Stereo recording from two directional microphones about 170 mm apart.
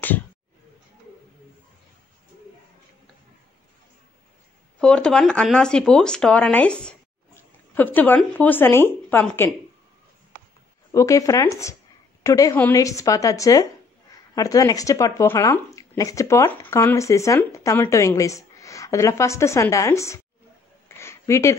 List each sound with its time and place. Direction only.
4.7 s a woman's voice: 5° left (ahead or behind)
10.9 s speech: 20° left (ahead or behind)
21.0 s a sound: 15° left (ahead or behind)